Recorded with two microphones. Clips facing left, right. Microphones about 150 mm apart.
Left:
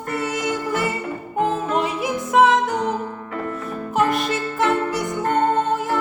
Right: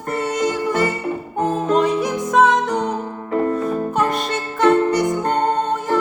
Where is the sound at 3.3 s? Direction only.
40° right (ahead or behind).